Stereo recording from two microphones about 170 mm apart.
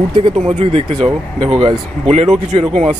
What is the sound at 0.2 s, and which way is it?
Speech, 35° right (ahead or behind).